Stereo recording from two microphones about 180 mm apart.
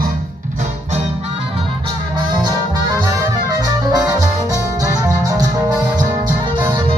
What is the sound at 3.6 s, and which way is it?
Music, 20° right (ahead or behind).